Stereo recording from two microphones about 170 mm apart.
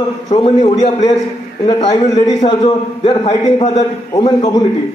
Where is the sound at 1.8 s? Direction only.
40° left (ahead or behind).